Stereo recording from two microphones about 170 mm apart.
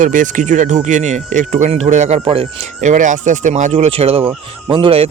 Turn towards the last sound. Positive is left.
turn(degrees=-30)  # may be behind; listen again after turning